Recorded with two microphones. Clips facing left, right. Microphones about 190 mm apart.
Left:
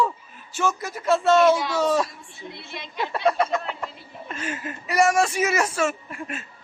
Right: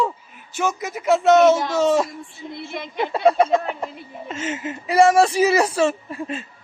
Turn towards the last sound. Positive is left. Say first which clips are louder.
# right 5 dB
turn(degrees=-30)  # may be behind; listen again after turning